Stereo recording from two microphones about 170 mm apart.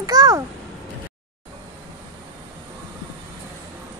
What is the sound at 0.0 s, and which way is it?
Babbling, 20° right (ahead or behind).